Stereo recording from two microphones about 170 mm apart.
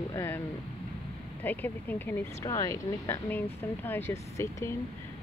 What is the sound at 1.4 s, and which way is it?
Speech, 10° left (ahead or behind).